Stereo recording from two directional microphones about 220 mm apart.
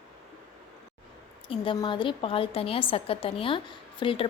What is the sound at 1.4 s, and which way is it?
A woman's voice, 25° left (ahead or behind).